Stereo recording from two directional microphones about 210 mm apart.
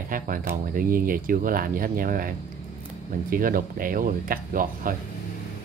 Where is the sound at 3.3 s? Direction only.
40° right (ahead or behind).